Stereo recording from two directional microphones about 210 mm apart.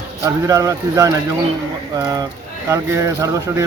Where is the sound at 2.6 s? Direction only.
10° right (ahead or behind).